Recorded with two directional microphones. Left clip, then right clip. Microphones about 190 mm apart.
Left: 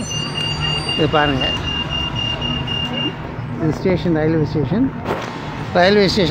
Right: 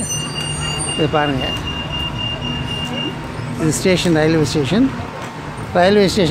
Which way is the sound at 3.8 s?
20° right (ahead or behind).